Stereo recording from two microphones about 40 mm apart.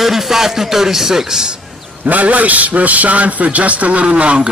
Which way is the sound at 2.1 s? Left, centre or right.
Right.